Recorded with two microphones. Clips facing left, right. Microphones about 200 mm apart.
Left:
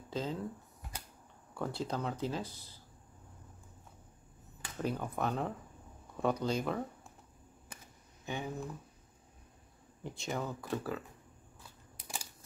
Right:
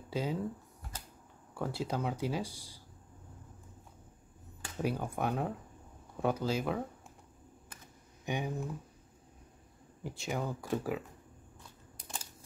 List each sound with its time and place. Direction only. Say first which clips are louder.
0.1 s speech: right 2 dB; 10° right (ahead or behind)
1.5 s speech: right 1 dB; 5° right (ahead or behind)
4.7 s speech: right 2 dB; 10° right (ahead or behind)
8.3 s speech: right 3 dB; 15° right (ahead or behind)
10.0 s speech: right 1 dB; 5° right (ahead or behind)
12.0 s a sound: left 1 dB; 10° left (ahead or behind)